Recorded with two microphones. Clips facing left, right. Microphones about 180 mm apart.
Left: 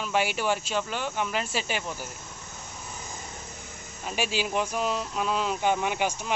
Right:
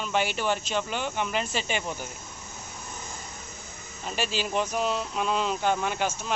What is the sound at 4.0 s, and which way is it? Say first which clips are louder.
Speech: left 1 dB; 10° left (ahead or behind).